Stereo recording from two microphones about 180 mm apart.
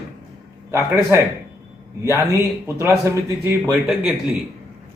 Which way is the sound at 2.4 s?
15° right (ahead or behind).